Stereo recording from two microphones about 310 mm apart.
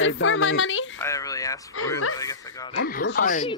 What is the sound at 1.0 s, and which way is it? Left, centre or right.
Speech, centre.